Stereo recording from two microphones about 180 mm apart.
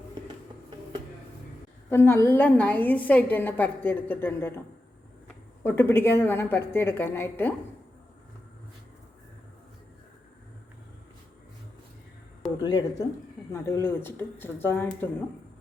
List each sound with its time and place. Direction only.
1.9 s a woman's voice: 15° left (ahead or behind)
5.6 s a woman's voice: 10° left (ahead or behind)
12.6 s a woman's voice: 25° left (ahead or behind)